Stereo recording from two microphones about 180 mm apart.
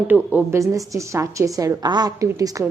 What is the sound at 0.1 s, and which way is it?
A woman's voice, 10° right (ahead or behind).